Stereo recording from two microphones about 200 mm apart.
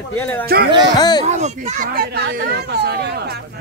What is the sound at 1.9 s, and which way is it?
Speech, 50° right (ahead or behind).